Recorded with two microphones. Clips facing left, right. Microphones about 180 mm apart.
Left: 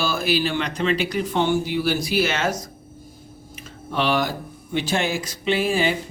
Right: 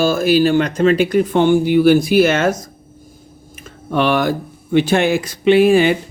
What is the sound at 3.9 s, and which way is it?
Speech, 55° right (ahead or behind).